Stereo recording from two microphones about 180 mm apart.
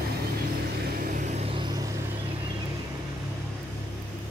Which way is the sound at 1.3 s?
35° right (ahead or behind).